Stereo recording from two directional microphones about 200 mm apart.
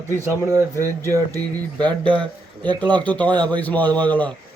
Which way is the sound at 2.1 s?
5° left (ahead or behind).